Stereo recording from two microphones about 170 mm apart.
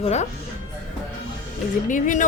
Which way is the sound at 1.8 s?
50° left (ahead or behind).